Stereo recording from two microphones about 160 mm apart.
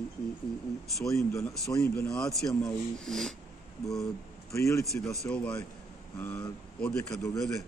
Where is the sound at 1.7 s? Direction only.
20° left (ahead or behind).